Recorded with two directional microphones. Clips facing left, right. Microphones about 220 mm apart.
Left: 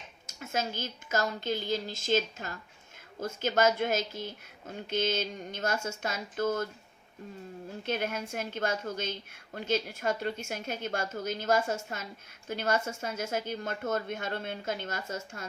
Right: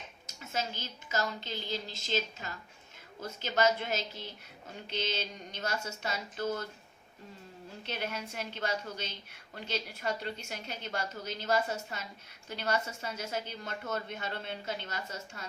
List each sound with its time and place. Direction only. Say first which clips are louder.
0.3 s a woman's voice: left 4 dB; 50° left (ahead or behind)
7.9 s a woman's voice: left 5 dB; 50° left (ahead or behind)